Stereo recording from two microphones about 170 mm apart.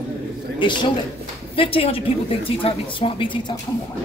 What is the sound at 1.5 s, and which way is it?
A woman's voice, 30° left (ahead or behind).